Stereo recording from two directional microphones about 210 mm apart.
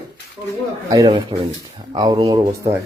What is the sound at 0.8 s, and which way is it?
Speech, 20° right (ahead or behind).